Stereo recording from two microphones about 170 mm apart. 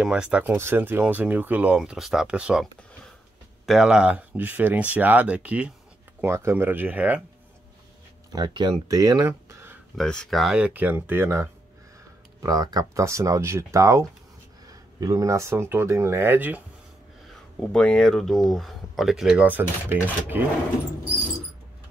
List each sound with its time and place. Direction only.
0.0 s speech: 5° right (ahead or behind)
8.3 s speech: 25° right (ahead or behind)
9.9 s speech: 5° left (ahead or behind)
17.3 s speech: 5° left (ahead or behind); by 20.4 s 10° right (ahead or behind)